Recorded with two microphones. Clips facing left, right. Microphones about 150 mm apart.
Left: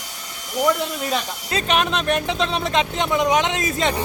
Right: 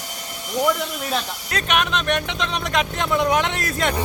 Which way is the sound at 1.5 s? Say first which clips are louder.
Left 2 dB; 30° left (ahead or behind).